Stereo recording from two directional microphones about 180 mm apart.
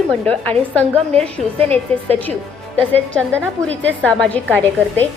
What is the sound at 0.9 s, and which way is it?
Speech, 35° right (ahead or behind).